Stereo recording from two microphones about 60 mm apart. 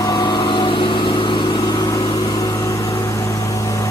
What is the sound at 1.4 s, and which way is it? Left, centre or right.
Vehicle, left.